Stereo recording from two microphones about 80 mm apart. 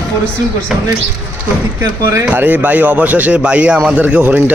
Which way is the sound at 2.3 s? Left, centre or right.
Right.